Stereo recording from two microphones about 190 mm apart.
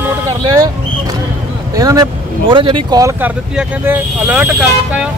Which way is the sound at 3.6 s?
5° right (ahead or behind).